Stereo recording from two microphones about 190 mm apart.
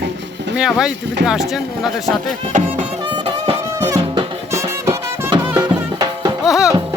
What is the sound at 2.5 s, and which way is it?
Music, 30° right (ahead or behind).